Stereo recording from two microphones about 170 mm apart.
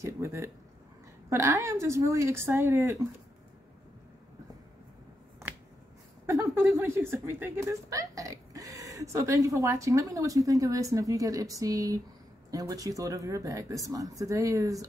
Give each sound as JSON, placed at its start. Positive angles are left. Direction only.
{"t": 0.0, "sound": "a woman's voice", "side_deg": -15}
{"t": 6.2, "sound": "speech", "side_deg": -15}